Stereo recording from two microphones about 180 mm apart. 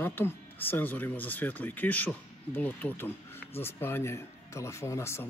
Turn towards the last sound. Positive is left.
turn(degrees=15)  # may be behind; listen again after turning